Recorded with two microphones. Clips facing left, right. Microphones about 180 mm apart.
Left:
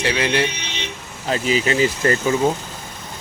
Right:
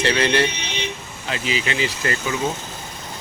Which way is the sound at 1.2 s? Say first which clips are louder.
Left 6 dB; 40° left (ahead or behind).